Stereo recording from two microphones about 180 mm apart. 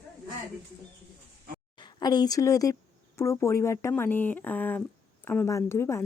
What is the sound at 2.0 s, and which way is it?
A woman's voice, 20° left (ahead or behind).